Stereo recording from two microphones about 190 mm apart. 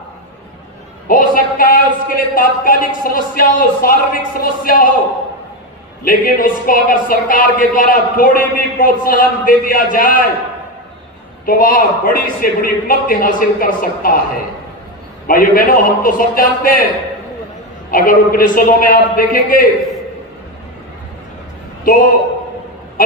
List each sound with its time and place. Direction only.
1.0 s a man's voice: 45° left (ahead or behind)
6.0 s a man's voice: 50° left (ahead or behind)
11.4 s a man's voice: 50° left (ahead or behind)
17.9 s a man's voice: 45° left (ahead or behind)